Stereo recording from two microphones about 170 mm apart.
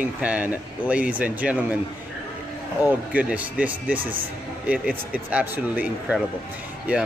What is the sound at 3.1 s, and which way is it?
Speech, 10° right (ahead or behind).